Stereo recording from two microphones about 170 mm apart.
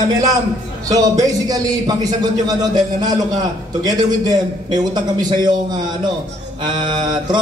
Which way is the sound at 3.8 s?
25° right (ahead or behind).